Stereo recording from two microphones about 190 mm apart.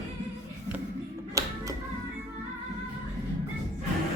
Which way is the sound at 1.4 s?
20° right (ahead or behind).